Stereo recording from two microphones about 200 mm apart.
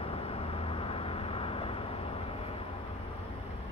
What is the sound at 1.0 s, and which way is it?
Vehicle, 25° left (ahead or behind).